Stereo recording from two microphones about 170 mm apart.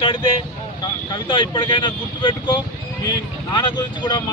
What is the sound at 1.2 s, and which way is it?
Speech, 25° left (ahead or behind).